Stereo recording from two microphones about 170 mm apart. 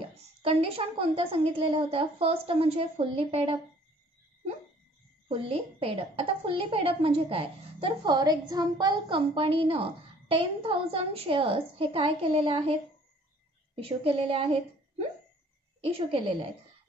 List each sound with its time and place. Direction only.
0.4 s a woman's voice: 35° right (ahead or behind)
5.3 s a woman's voice: 35° right (ahead or behind)
13.7 s a woman's voice: 35° right (ahead or behind)